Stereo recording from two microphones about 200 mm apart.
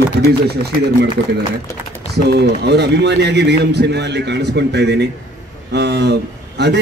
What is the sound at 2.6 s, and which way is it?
A man's voice, 55° right (ahead or behind).